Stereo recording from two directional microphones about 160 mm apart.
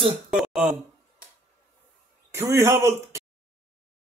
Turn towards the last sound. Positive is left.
turn(degrees=-20)  # may be behind; listen again after turning